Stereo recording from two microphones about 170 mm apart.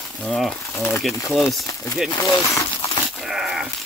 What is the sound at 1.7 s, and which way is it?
Speech, 20° left (ahead or behind).